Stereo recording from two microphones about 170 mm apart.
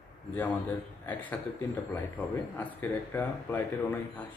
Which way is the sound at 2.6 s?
10° left (ahead or behind).